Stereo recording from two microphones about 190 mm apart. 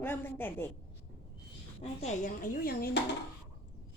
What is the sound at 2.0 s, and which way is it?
Speech, 40° left (ahead or behind).